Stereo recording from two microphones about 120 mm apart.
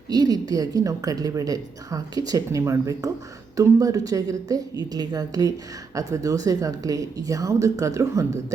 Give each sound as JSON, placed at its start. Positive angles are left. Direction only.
{"t": 0.1, "sound": "a woman's voice", "side_deg": -35}